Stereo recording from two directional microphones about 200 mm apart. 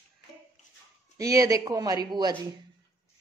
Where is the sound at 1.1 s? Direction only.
15° right (ahead or behind).